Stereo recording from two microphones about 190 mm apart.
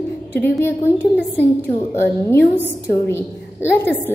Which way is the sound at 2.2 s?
10° left (ahead or behind).